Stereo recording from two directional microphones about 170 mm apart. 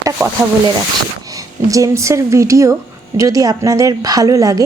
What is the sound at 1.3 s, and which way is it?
Speech, 20° right (ahead or behind).